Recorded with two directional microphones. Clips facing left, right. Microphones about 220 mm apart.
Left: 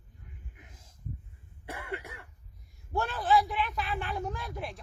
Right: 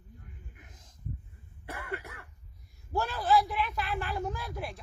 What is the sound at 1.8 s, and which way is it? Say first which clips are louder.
Cough: even; 20° left (ahead or behind).